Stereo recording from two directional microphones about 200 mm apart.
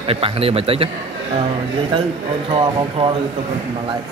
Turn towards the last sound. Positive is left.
turn(degrees=-25)  # may be behind; listen again after turning